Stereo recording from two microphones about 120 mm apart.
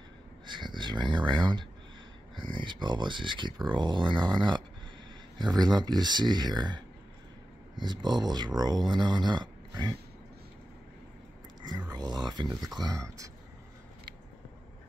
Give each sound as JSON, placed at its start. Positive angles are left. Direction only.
{"t": 0.5, "sound": "speech", "side_deg": -40}
{"t": 11.9, "sound": "speech", "side_deg": -35}